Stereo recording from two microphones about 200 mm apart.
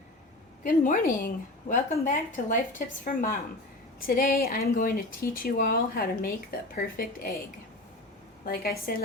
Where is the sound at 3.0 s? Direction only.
45° left (ahead or behind).